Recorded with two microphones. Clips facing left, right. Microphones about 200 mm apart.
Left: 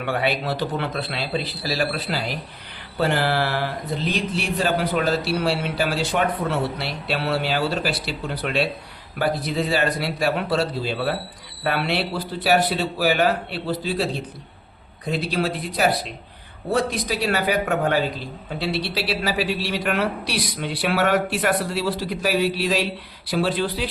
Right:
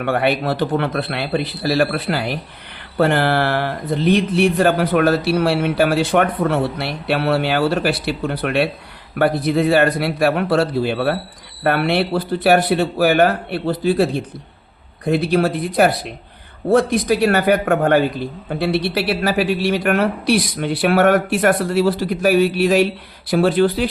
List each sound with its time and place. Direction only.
0.0 s speech: 55° right (ahead or behind)